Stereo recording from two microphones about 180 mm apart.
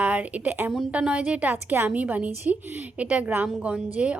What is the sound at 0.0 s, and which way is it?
A woman's voice, 10° right (ahead or behind).